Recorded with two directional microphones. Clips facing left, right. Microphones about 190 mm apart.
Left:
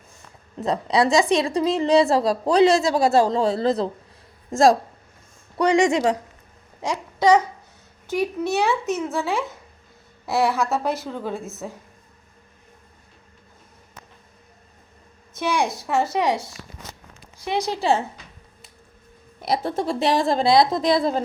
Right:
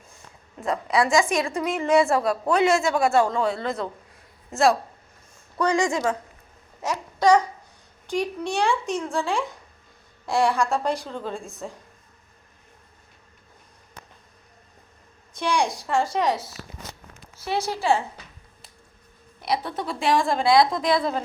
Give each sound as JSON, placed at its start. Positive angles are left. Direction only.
{"t": 0.7, "sound": "a woman's voice", "side_deg": 35}
{"t": 5.5, "sound": "a woman's voice", "side_deg": 20}
{"t": 6.8, "sound": "a woman's voice", "side_deg": 10}
{"t": 15.4, "sound": "a woman's voice", "side_deg": 5}
{"t": 19.5, "sound": "a woman's voice", "side_deg": 45}